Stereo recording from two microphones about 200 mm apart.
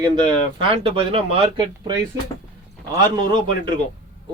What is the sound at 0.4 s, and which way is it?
Speech, 25° right (ahead or behind).